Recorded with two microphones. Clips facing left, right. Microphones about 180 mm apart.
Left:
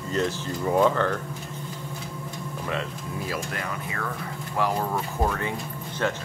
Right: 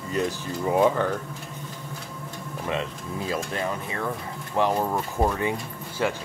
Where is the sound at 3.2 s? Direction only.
25° right (ahead or behind).